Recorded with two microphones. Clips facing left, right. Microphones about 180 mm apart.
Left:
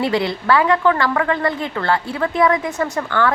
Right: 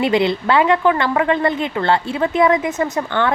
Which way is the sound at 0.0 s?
20° right (ahead or behind).